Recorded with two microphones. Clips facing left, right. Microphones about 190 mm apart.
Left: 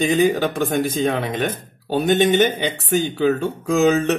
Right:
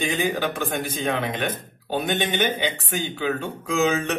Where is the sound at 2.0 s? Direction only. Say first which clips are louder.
Left 9 dB; 40° left (ahead or behind).